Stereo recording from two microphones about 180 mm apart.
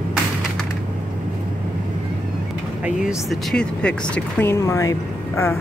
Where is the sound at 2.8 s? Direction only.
Centre (ahead or behind).